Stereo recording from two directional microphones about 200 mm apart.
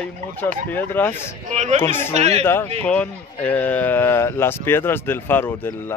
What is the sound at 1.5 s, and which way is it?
Speech, 35° right (ahead or behind).